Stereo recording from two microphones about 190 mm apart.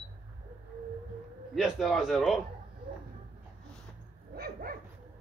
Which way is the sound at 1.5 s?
Centre (ahead or behind).